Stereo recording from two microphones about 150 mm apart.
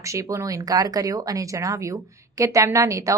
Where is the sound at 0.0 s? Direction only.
20° right (ahead or behind).